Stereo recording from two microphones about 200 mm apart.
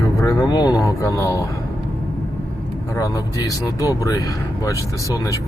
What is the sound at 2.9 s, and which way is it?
Speech, 15° left (ahead or behind).